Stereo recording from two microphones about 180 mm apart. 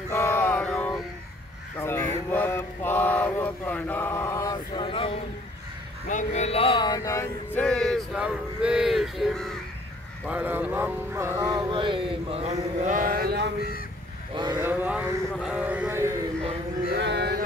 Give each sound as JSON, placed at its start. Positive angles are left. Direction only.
{"t": 0.1, "sound": "music", "side_deg": 15}
{"t": 1.8, "sound": "a sound", "side_deg": 15}
{"t": 6.0, "sound": "a sound", "side_deg": 40}
{"t": 10.2, "sound": "speech", "side_deg": -10}
{"t": 14.3, "sound": "cattle", "side_deg": -25}
{"t": 14.6, "sound": "music", "side_deg": -10}
{"t": 16.9, "sound": "speech", "side_deg": -70}